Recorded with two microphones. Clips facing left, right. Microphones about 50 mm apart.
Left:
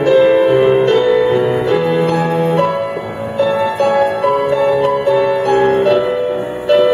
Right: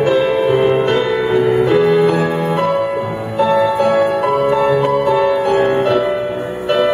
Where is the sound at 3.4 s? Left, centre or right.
Centre.